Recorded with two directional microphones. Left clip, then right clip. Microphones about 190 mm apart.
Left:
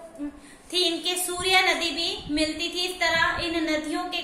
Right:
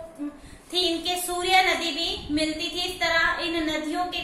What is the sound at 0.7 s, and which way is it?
A woman's voice, 25° left (ahead or behind).